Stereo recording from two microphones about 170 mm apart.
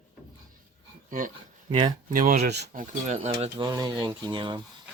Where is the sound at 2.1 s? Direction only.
55° right (ahead or behind); by 2.6 s 70° right (ahead or behind).